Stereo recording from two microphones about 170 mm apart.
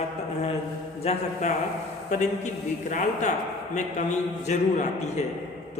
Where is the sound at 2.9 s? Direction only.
45° left (ahead or behind).